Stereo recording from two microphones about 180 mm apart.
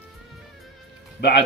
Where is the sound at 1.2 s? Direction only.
65° left (ahead or behind).